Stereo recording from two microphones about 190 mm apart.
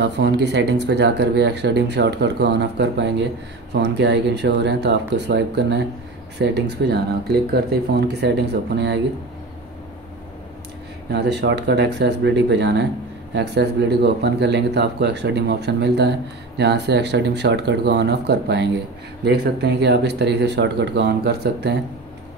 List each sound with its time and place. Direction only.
0.0 s speech: 65° right (ahead or behind)
11.1 s speech: 60° right (ahead or behind)